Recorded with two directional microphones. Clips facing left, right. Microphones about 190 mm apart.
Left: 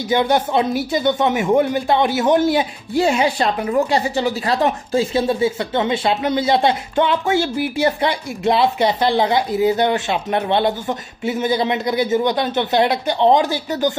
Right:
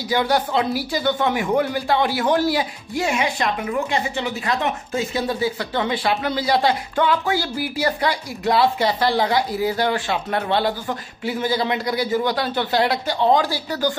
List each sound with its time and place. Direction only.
0.1 s speech: 20° left (ahead or behind)